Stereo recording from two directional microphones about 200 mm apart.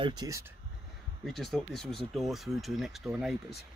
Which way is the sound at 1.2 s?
Centre (ahead or behind).